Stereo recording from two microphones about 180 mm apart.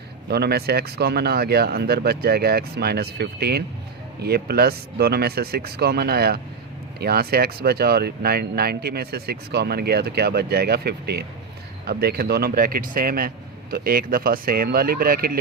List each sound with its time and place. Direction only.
0.3 s speech: 65° right (ahead or behind)